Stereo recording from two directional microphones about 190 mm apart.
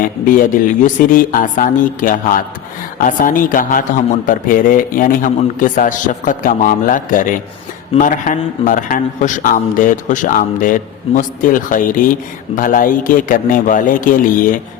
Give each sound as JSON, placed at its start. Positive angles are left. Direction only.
{"t": 0.0, "sound": "a man's voice", "side_deg": 45}